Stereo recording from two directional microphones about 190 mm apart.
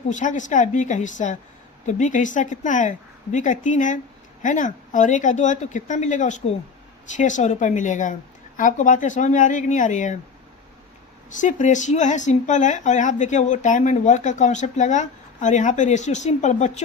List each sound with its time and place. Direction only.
0.1 s speech: 40° left (ahead or behind)
11.3 s speech: 40° left (ahead or behind)